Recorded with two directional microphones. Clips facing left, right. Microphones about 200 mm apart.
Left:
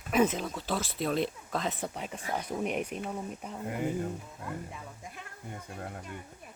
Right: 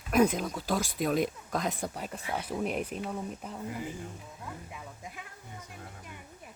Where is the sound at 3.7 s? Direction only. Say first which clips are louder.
Left 8 dB; 55° left (ahead or behind).